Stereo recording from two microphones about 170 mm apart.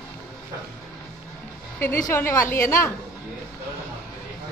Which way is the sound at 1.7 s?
15° left (ahead or behind).